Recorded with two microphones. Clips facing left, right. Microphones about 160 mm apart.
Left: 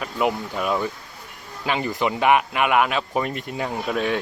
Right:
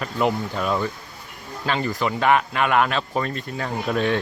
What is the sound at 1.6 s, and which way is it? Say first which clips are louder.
Speech: even; 15° left (ahead or behind).